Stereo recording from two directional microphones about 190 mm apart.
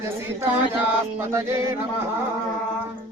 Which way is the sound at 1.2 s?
15° right (ahead or behind).